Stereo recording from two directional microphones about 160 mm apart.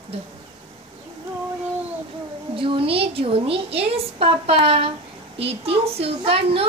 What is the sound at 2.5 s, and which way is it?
A woman's voice, 35° right (ahead or behind).